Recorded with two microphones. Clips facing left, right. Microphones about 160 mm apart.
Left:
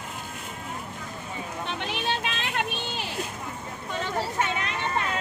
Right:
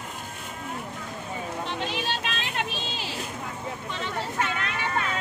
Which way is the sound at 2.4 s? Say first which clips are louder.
Left 1 dB; 60° left (ahead or behind).